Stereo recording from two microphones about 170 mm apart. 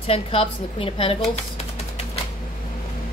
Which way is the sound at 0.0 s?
35° left (ahead or behind).